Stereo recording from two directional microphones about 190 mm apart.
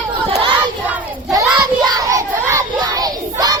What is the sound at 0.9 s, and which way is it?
Child singing, 10° right (ahead or behind).